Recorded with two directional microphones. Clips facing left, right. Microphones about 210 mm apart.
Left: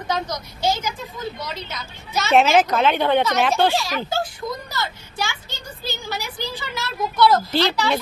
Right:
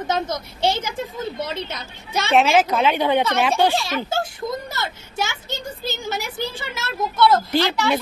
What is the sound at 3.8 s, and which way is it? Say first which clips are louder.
Speech: right 1 dB; 25° right (ahead or behind).